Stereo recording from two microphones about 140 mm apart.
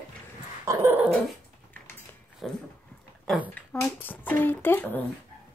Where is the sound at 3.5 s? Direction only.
10° left (ahead or behind).